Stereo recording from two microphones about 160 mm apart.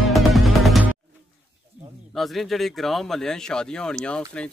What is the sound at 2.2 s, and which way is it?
Speech, centre (ahead or behind).